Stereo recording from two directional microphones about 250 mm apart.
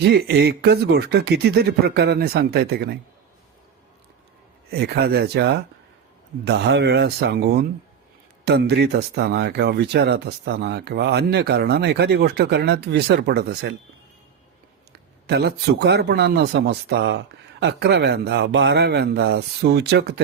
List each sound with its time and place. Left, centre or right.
0.0 s speech: right
4.7 s speech: right
15.3 s speech: right